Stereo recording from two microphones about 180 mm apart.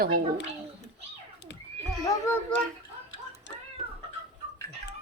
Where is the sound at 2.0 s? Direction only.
20° left (ahead or behind).